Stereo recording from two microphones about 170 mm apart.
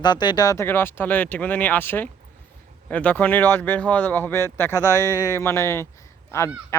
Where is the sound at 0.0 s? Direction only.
25° left (ahead or behind).